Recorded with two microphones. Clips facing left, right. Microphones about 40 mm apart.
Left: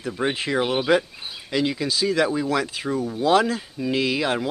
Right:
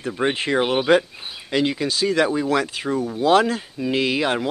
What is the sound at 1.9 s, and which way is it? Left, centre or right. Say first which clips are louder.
Speech: right 2 dB; centre.